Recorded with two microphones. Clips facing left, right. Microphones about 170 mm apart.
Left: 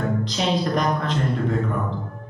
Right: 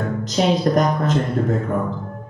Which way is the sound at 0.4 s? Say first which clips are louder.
Right 7 dB; 40° right (ahead or behind).